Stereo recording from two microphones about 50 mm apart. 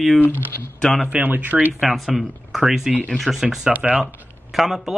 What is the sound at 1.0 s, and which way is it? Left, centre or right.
Speech, right.